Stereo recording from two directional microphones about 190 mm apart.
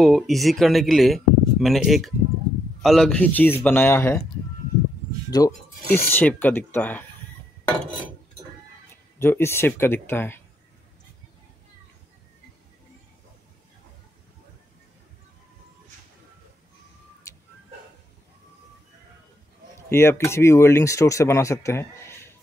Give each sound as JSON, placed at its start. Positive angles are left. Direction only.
{"t": 0.0, "sound": "speech", "side_deg": 0}
{"t": 5.3, "sound": "speech", "side_deg": 20}
{"t": 9.2, "sound": "speech", "side_deg": 15}
{"t": 19.9, "sound": "speech", "side_deg": 15}